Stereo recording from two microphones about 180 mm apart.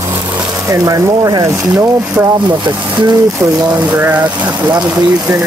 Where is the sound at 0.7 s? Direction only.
20° right (ahead or behind).